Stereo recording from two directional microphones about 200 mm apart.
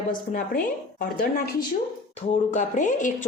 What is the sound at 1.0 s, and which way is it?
Speech, 45° left (ahead or behind).